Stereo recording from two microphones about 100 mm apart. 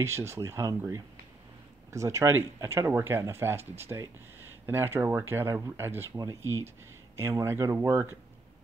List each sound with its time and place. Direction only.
0.0 s speech: 30° right (ahead or behind)